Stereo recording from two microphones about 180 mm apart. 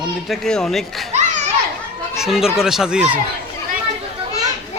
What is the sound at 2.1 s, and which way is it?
Speech, centre (ahead or behind).